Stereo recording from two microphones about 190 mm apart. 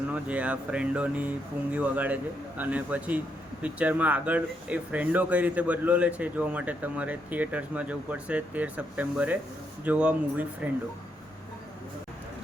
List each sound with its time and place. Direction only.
0.1 s speech: 5° right (ahead or behind)